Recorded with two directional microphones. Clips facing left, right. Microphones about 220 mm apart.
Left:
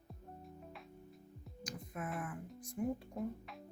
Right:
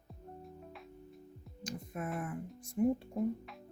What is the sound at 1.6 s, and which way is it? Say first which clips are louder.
Speech: right 4 dB; 25° right (ahead or behind).